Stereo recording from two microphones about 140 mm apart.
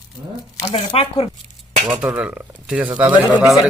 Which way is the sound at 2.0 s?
10° right (ahead or behind).